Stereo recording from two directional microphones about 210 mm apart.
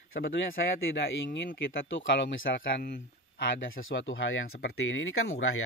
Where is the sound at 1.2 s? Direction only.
60° left (ahead or behind).